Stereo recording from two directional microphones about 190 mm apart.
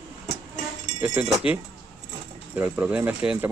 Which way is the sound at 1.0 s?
10° right (ahead or behind).